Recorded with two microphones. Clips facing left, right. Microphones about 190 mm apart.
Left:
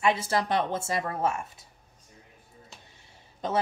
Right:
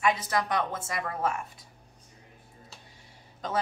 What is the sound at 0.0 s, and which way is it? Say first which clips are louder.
Speech: left 2 dB; 25° left (ahead or behind).